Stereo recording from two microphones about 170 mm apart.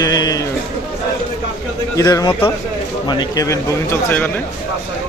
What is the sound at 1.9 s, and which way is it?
Speech, 20° left (ahead or behind).